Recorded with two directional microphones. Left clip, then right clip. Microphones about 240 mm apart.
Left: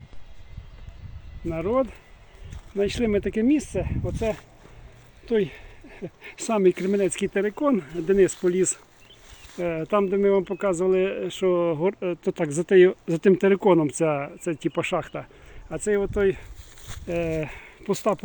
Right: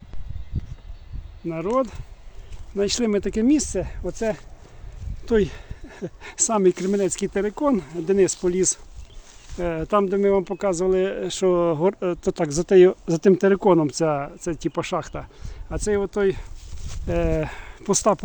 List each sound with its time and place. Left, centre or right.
1.5 s speech: centre
5.2 s a sound: right
6.3 s speech: centre
12.7 s speech: centre